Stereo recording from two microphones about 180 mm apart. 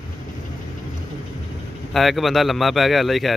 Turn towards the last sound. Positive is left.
turn(degrees=0)  # may be behind; listen again after turning